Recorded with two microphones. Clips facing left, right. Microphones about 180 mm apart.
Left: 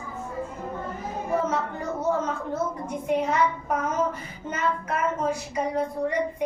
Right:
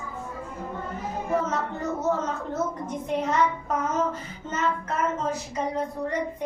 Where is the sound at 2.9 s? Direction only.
10° left (ahead or behind).